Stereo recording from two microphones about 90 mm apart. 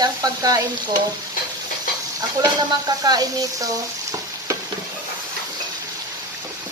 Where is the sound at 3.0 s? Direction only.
45° right (ahead or behind).